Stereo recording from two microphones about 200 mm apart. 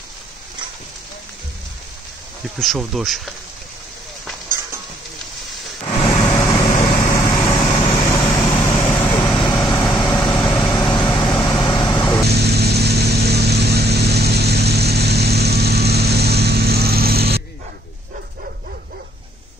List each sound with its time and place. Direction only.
2.6 s speech: centre (ahead or behind)
5.9 s a sound: 20° left (ahead or behind)
6.6 s vehicle: 35° left (ahead or behind)
7.1 s vehicle: 20° left (ahead or behind)
12.3 s vehicle: 55° right (ahead or behind)